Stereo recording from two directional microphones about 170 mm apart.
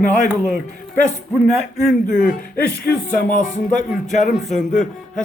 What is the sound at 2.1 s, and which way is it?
Speech, 50° left (ahead or behind).